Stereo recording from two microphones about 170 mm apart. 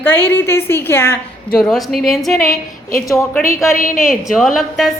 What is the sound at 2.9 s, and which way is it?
Speech, 15° left (ahead or behind).